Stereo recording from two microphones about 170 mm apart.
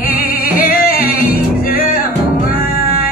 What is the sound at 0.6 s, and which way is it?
Singing, 60° left (ahead or behind).